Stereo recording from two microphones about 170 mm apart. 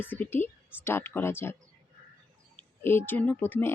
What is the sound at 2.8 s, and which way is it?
Speech, 15° left (ahead or behind).